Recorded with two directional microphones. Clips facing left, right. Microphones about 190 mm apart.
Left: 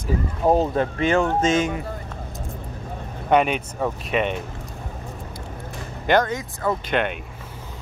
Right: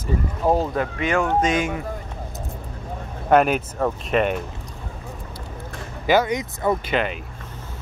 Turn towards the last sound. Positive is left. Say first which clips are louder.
# even
turn(degrees=0)  # may be behind; listen again after turning